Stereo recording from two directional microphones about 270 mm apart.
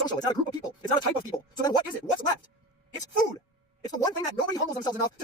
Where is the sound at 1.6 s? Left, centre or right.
Centre.